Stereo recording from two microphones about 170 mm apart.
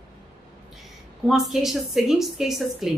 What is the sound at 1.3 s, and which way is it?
A woman's voice, centre (ahead or behind).